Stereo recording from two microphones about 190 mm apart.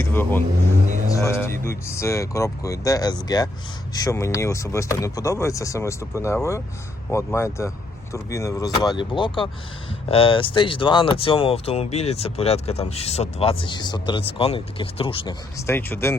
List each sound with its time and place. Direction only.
0.0 s speech: 10° left (ahead or behind); by 15.4 s 30° left (ahead or behind)
15.6 s speech: 10° left (ahead or behind)